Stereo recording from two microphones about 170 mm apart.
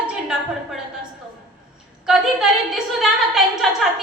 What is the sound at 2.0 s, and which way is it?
A woman's voice, centre (ahead or behind).